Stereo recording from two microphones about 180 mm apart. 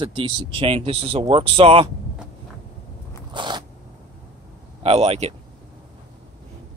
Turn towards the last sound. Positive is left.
turn(degrees=-35)  # may be behind; listen again after turning